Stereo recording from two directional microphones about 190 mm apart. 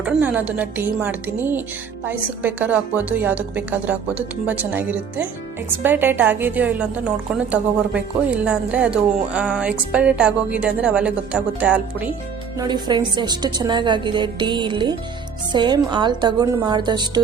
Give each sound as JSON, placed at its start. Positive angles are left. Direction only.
{"t": 0.0, "sound": "a woman's voice", "side_deg": -10}
{"t": 12.5, "sound": "a woman's voice", "side_deg": -20}